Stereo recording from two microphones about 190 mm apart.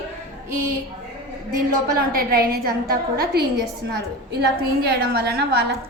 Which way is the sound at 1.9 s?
50° right (ahead or behind).